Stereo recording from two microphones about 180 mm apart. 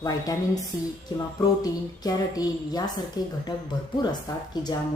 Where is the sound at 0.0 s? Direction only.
20° left (ahead or behind).